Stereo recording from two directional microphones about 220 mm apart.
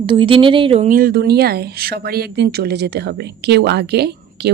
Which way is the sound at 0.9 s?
45° right (ahead or behind).